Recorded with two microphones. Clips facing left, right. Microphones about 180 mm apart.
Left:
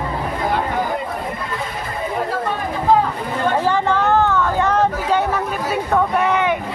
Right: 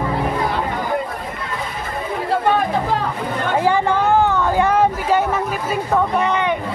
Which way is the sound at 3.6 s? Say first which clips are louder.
Right 1 dB; 10° right (ahead or behind).